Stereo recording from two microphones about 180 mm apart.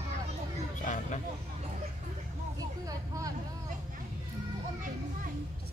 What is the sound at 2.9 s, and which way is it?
Vehicle, 20° right (ahead or behind).